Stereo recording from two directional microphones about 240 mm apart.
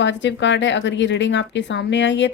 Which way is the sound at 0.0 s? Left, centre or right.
Left.